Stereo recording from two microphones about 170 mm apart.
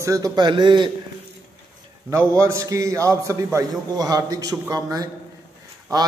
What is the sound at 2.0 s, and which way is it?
A man's voice, 15° right (ahead or behind).